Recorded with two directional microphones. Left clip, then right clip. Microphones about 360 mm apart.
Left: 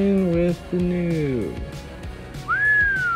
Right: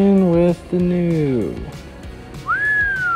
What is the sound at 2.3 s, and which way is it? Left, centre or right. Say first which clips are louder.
Whistling: right 1 dB; centre.